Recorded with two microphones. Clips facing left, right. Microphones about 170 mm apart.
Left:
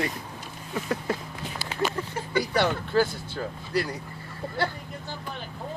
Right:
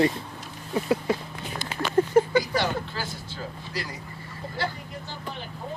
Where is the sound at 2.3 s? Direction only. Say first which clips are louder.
Even; 55° left (ahead or behind).